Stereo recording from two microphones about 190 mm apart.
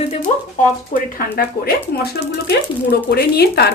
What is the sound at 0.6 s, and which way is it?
Speech, 40° left (ahead or behind).